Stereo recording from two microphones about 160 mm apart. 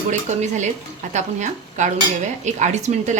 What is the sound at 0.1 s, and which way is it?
Speech, 50° right (ahead or behind).